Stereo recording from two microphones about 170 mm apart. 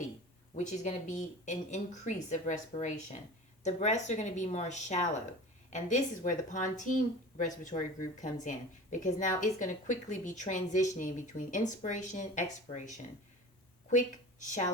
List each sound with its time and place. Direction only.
0.5 s a woman's voice: 45° left (ahead or behind)